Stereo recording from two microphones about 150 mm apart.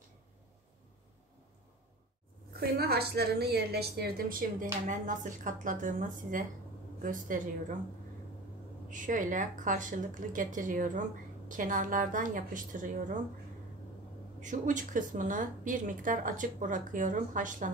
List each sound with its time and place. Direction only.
2.5 s a woman's voice: 90° right; by 7.4 s 60° right (ahead or behind)
8.9 s a woman's voice: 60° right (ahead or behind)
14.4 s a woman's voice: 60° right (ahead or behind)